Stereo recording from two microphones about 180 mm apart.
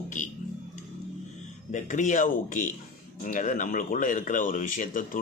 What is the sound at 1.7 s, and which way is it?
Speech, 45° left (ahead or behind).